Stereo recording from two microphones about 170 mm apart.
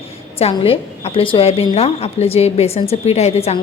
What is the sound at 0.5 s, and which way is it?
A woman's voice, 35° left (ahead or behind).